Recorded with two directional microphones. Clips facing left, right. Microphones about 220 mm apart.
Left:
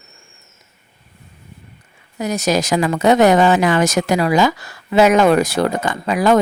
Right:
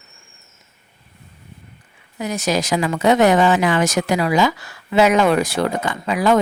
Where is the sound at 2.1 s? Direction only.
40° left (ahead or behind).